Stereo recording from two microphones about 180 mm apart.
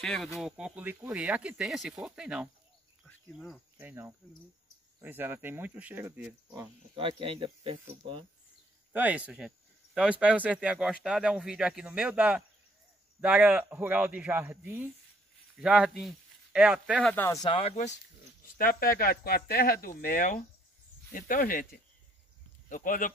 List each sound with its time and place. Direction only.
0.0 s speech: 5° left (ahead or behind)
3.7 s speech: 10° right (ahead or behind)
7.0 s speech: 30° right (ahead or behind)
8.9 s speech: 10° right (ahead or behind)
17.0 s speech: 10° left (ahead or behind)
17.5 s speech: 35° left (ahead or behind)
18.6 s speech: 55° left (ahead or behind)
22.7 s speech: 50° left (ahead or behind)